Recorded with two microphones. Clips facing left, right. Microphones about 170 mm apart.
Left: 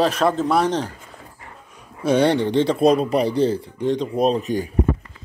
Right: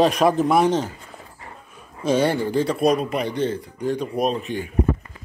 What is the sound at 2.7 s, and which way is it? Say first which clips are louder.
Speech: left 3 dB; 35° left (ahead or behind).